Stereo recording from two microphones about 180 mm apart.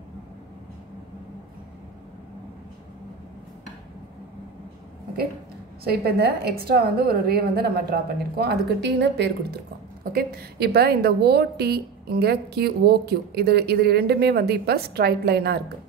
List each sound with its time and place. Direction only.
5.9 s a woman's voice: 60° right (ahead or behind)